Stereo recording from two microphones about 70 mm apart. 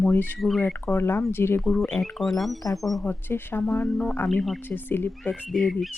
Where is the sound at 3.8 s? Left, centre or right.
Centre.